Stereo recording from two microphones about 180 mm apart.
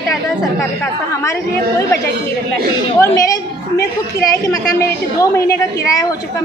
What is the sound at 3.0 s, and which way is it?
A woman's voice, 20° left (ahead or behind).